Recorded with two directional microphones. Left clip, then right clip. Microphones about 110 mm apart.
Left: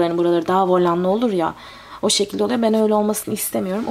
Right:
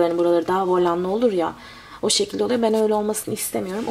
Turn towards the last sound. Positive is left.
turn(degrees=40)  # may be behind; listen again after turning